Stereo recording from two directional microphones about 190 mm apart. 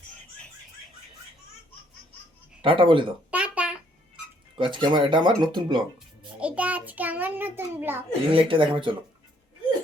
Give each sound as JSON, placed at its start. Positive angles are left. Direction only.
{"t": 2.6, "sound": "speech", "side_deg": -25}
{"t": 3.3, "sound": "a sound", "side_deg": -5}
{"t": 4.5, "sound": "speech", "side_deg": -25}
{"t": 6.4, "sound": "child singing", "side_deg": -5}
{"t": 8.3, "sound": "speech", "side_deg": -30}